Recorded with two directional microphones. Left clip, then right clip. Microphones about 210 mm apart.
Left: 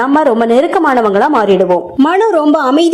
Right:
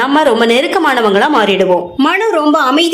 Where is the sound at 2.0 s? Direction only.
50° left (ahead or behind).